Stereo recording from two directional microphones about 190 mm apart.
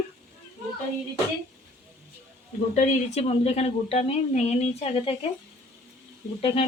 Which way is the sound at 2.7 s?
35° left (ahead or behind).